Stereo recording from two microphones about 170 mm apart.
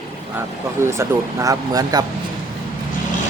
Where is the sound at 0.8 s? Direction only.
15° right (ahead or behind).